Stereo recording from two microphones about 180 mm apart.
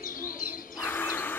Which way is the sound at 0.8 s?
10° left (ahead or behind).